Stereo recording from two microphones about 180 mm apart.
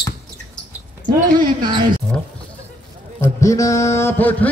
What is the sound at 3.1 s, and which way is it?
A man's voice, 15° left (ahead or behind).